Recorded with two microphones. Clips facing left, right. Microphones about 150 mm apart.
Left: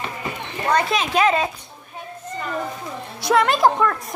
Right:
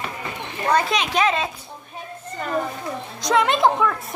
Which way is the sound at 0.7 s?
5° right (ahead or behind).